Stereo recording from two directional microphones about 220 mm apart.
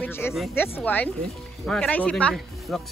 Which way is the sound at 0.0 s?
10° left (ahead or behind).